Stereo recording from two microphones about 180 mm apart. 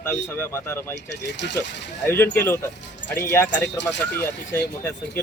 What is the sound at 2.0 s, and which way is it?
Speech, 15° left (ahead or behind).